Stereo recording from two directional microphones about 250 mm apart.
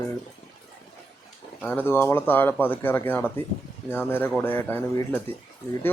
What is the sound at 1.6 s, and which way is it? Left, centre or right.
Speech, centre.